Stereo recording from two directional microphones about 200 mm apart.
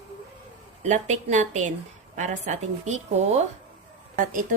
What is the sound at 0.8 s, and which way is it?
A woman's voice, 35° right (ahead or behind).